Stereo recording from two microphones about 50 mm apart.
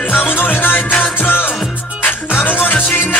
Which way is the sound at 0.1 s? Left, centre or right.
Left.